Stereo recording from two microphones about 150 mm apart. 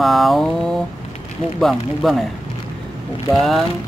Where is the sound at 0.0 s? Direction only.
Centre (ahead or behind).